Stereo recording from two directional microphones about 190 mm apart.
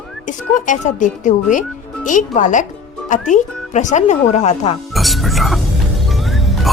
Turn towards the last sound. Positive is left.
turn(degrees=0)  # may be behind; listen again after turning